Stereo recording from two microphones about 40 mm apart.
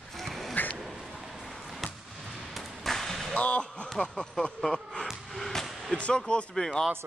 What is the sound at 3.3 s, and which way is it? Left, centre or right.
Speech, left.